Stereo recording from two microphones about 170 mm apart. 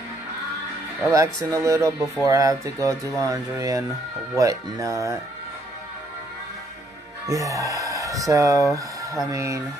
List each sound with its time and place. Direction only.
1.1 s speech: 20° right (ahead or behind)
7.2 s speech: 20° right (ahead or behind)